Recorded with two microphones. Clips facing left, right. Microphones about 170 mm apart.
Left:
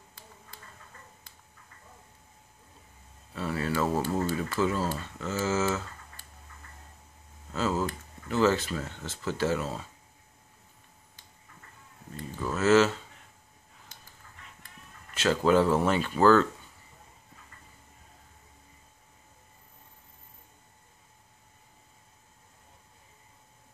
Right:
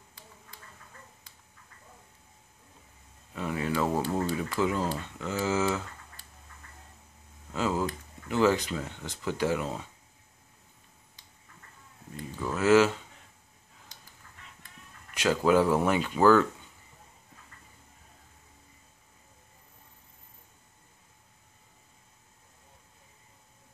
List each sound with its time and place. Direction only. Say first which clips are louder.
3.3 s speech: even; 15° right (ahead or behind)
7.5 s speech: even; 15° right (ahead or behind)
12.4 s speech: even; 15° right (ahead or behind)
15.1 s speech: even; 10° right (ahead or behind)